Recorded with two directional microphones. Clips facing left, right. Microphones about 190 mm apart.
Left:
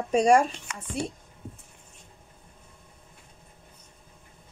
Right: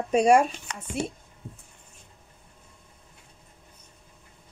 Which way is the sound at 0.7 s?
35° right (ahead or behind).